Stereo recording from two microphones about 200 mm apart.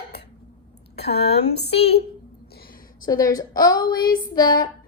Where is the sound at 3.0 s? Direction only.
20° left (ahead or behind).